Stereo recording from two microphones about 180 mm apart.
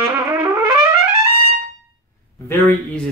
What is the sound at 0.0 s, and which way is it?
Trumpet, 15° right (ahead or behind).